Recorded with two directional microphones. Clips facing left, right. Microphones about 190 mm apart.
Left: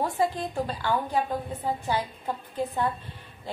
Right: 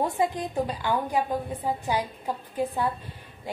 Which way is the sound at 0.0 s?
20° right (ahead or behind).